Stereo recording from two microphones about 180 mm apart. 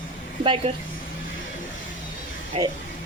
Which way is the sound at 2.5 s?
30° right (ahead or behind).